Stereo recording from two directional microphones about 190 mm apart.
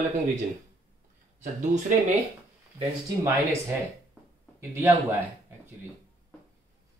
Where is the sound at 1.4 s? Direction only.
40° right (ahead or behind).